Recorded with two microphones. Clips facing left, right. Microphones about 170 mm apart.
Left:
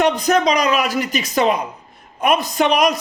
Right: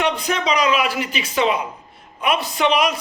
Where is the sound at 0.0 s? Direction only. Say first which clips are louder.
Left 6 dB; 40° left (ahead or behind).